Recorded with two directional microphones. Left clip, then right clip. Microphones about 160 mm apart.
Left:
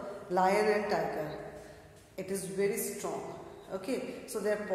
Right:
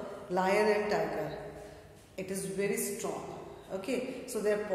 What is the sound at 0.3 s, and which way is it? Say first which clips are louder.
Speech: left 1 dB; 20° left (ahead or behind).